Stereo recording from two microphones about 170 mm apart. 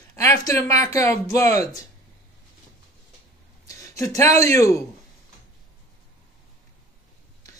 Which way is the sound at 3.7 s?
20° left (ahead or behind).